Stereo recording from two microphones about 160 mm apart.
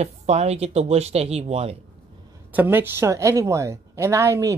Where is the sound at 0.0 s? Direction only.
40° right (ahead or behind).